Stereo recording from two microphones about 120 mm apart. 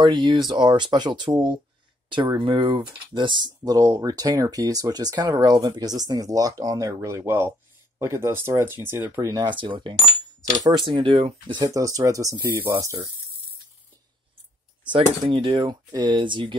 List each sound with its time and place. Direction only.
0.0 s speech: 40° right (ahead or behind); by 9.4 s 20° right (ahead or behind)
9.4 s speech: 40° right (ahead or behind); by 13.0 s 20° right (ahead or behind)
14.9 s speech: 50° right (ahead or behind)